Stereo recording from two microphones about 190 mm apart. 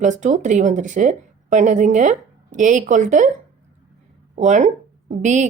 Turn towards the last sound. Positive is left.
turn(degrees=-40)  # may be behind; listen again after turning